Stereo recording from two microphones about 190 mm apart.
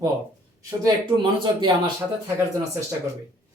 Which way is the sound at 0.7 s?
20° right (ahead or behind).